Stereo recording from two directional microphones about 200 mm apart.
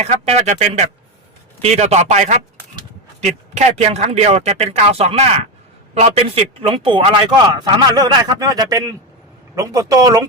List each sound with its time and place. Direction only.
0.0 s a man's voice: 35° right (ahead or behind); by 10.2 s 15° right (ahead or behind)